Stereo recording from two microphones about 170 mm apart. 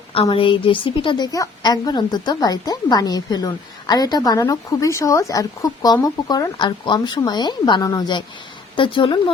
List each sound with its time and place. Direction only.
0.1 s a woman's voice: 30° left (ahead or behind)